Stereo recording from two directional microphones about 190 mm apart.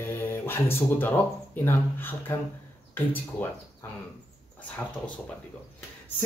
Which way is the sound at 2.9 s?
10° left (ahead or behind).